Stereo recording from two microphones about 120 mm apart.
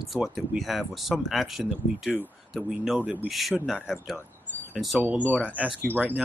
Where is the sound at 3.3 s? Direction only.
Centre (ahead or behind).